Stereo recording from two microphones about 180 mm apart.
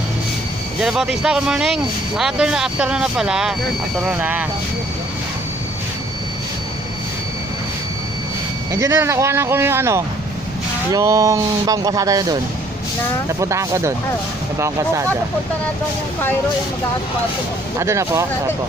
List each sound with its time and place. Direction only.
0.7 s speech: 5° right (ahead or behind)
8.7 s speech: 15° right (ahead or behind)
17.7 s speech: 15° right (ahead or behind)